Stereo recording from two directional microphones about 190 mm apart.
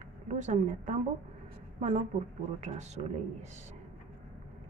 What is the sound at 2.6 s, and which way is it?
Speech, 35° right (ahead or behind).